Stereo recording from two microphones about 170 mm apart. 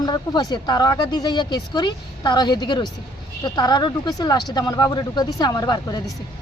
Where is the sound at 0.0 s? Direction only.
25° left (ahead or behind).